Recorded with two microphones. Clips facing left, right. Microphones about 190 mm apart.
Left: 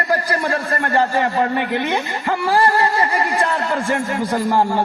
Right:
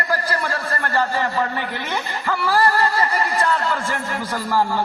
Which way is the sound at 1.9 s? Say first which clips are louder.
Left 3 dB; 25° left (ahead or behind).